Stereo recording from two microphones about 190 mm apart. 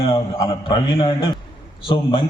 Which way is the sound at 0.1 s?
25° left (ahead or behind).